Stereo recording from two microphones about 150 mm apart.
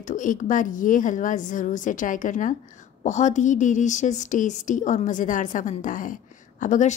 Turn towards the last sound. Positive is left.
turn(degrees=55)  # may be behind; listen again after turning